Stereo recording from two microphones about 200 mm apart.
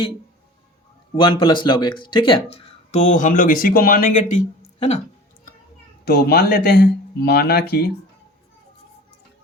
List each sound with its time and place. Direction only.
1.1 s speech: 25° left (ahead or behind)
6.1 s speech: 55° left (ahead or behind)